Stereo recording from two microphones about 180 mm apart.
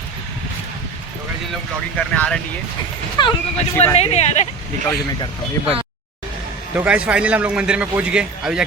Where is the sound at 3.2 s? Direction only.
25° left (ahead or behind).